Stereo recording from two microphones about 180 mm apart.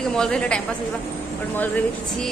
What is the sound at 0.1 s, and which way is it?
Speech, 5° left (ahead or behind).